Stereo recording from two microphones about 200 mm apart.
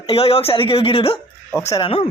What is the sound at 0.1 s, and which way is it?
Speech, 30° left (ahead or behind).